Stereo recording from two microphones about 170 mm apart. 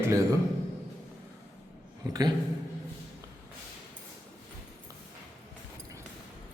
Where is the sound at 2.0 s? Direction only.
20° right (ahead or behind).